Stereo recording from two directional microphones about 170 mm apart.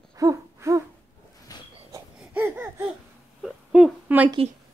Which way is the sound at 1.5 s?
20° left (ahead or behind).